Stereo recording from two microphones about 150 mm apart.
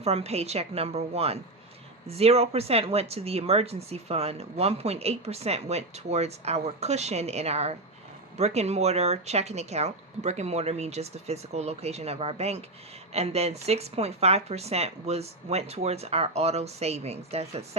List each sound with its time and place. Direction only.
0.0 s speech: 45° right (ahead or behind)